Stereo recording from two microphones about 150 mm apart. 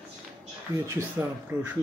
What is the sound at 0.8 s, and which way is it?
Speech, 15° right (ahead or behind).